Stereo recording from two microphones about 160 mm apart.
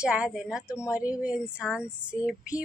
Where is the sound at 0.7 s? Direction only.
20° left (ahead or behind).